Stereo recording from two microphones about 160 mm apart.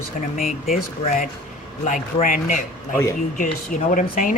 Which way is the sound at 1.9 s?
55° left (ahead or behind).